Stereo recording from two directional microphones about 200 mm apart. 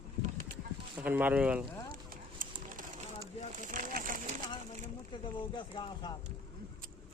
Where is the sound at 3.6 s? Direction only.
40° right (ahead or behind).